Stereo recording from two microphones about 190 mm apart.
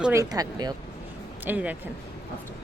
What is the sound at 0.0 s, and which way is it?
Speech, 15° right (ahead or behind).